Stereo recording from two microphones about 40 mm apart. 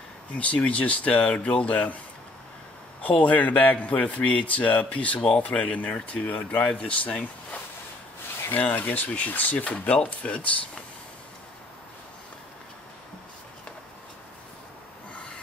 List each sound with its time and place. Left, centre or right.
0.4 s a man's voice: left
3.0 s a man's voice: left
6.7 s a man's voice: left
8.6 s a man's voice: left